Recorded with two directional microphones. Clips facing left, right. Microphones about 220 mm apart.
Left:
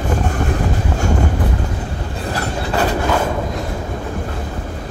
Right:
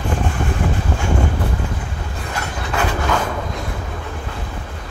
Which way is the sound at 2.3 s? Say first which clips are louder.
Left 4 dB; 35° left (ahead or behind).